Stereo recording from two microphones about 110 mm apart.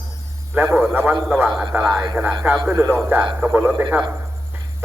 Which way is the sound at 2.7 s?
20° right (ahead or behind).